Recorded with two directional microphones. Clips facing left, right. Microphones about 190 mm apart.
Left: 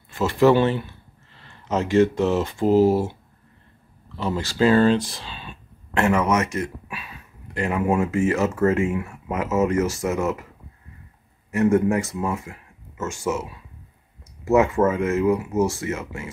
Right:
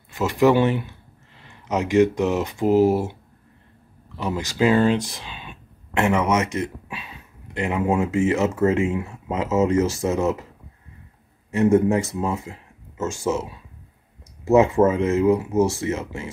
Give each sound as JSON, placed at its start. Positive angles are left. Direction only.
{"t": 0.1, "sound": "speech", "side_deg": -15}
{"t": 4.2, "sound": "speech", "side_deg": -15}
{"t": 11.5, "sound": "speech", "side_deg": -25}